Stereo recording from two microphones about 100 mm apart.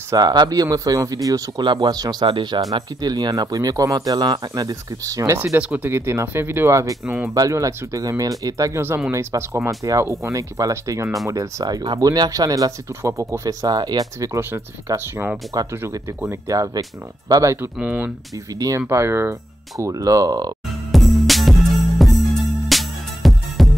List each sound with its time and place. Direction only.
0.1 s speech: 45° right (ahead or behind)
1.6 s speech: 50° right (ahead or behind)
2.2 s speech: 55° right (ahead or behind)
3.0 s speech: 40° right (ahead or behind)
5.6 s speech: 15° right (ahead or behind)
11.6 s speech: 45° right (ahead or behind)
17.7 s speech: 15° right (ahead or behind)
19.8 s speech: 35° right (ahead or behind)
20.9 s music: centre (ahead or behind)